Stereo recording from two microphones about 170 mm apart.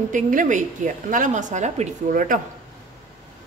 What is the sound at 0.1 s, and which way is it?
A woman's voice, 50° right (ahead or behind).